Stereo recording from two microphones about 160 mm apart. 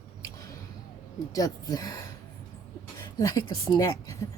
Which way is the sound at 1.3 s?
25° left (ahead or behind).